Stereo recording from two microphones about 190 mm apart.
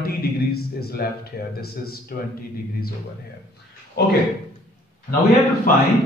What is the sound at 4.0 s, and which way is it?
Speech, 55° left (ahead or behind).